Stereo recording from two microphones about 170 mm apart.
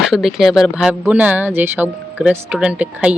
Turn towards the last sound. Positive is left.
turn(degrees=-10)  # may be behind; listen again after turning